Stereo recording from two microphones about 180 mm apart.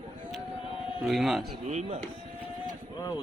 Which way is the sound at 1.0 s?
Centre (ahead or behind).